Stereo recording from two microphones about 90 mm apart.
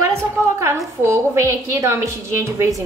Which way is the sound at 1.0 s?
30° right (ahead or behind).